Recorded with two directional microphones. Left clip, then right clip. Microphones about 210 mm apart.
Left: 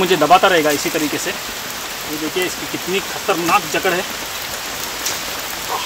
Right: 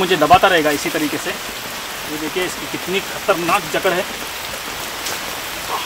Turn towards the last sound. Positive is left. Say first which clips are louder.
# left 1 dB
turn(degrees=5)  # may be behind; listen again after turning